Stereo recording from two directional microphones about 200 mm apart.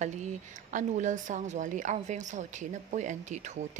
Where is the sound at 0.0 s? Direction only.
35° right (ahead or behind).